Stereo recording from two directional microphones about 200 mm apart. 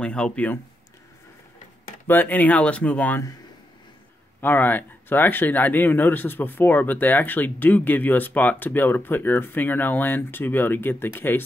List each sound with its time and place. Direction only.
0.0 s speech: 5° left (ahead or behind)
2.0 s speech: 10° left (ahead or behind)
4.4 s speech: 10° left (ahead or behind)